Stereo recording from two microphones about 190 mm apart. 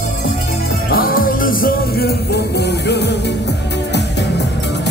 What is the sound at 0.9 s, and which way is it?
Music, 50° left (ahead or behind).